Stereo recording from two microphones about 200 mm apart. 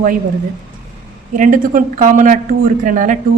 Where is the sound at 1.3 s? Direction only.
40° right (ahead or behind).